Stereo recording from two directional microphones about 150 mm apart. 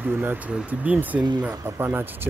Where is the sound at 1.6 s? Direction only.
20° right (ahead or behind).